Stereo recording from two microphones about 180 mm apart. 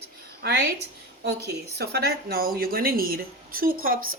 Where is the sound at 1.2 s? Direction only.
65° right (ahead or behind).